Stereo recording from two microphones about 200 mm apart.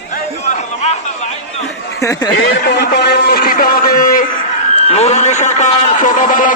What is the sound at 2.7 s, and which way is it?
A man's voice, 55° left (ahead or behind).